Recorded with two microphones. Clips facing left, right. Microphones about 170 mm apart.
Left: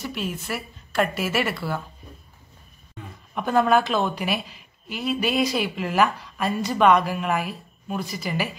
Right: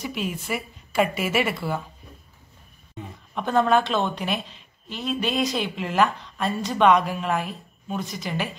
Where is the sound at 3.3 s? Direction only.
5° left (ahead or behind).